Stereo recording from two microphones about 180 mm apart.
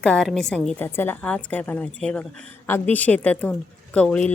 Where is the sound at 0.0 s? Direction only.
5° left (ahead or behind).